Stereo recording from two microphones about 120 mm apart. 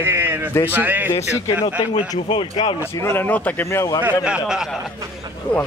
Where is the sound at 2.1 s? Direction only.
40° left (ahead or behind).